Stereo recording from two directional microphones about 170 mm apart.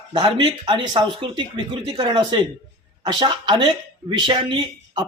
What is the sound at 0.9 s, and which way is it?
Speech, 25° right (ahead or behind).